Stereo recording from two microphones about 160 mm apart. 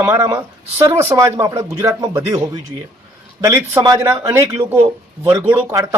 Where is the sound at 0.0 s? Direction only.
15° right (ahead or behind).